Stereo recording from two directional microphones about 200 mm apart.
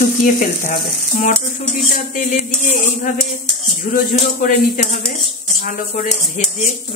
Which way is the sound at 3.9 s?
40° left (ahead or behind).